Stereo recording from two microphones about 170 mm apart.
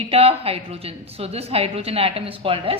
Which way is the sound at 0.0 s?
35° right (ahead or behind).